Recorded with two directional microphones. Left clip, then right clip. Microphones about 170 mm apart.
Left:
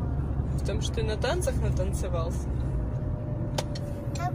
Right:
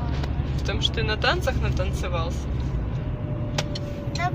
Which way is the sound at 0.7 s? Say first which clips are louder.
Right 7 dB; 25° left (ahead or behind).